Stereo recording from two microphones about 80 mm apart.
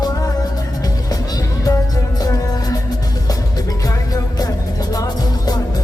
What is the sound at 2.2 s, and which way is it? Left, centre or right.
Music, left.